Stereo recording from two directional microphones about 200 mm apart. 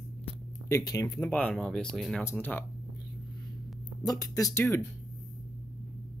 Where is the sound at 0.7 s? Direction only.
15° left (ahead or behind).